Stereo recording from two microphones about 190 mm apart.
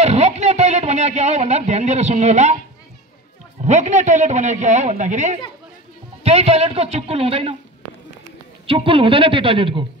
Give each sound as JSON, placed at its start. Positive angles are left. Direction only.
{"t": 0.0, "sound": "a sound", "side_deg": -35}
{"t": 3.6, "sound": "a man's voice", "side_deg": -40}
{"t": 8.6, "sound": "a woman's voice", "side_deg": -30}